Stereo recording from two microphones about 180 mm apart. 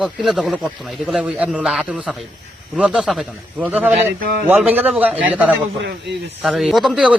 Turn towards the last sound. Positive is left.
turn(degrees=-5)  # may be behind; listen again after turning